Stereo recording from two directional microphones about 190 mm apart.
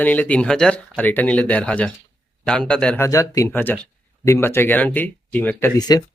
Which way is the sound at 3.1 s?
15° left (ahead or behind).